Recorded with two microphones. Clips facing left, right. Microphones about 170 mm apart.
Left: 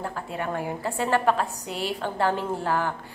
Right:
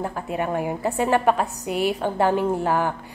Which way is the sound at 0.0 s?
15° right (ahead or behind).